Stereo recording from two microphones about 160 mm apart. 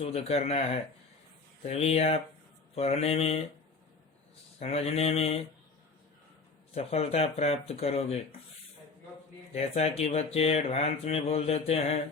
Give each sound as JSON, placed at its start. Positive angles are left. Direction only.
{"t": 0.0, "sound": "speech", "side_deg": 40}
{"t": 4.6, "sound": "speech", "side_deg": 40}
{"t": 6.7, "sound": "speech", "side_deg": 40}
{"t": 9.5, "sound": "speech", "side_deg": 40}